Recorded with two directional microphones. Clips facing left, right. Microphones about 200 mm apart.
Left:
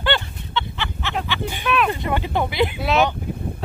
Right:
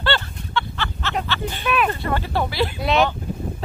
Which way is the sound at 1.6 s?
5° right (ahead or behind).